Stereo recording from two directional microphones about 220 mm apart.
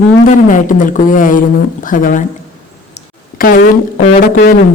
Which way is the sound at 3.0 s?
40° left (ahead or behind).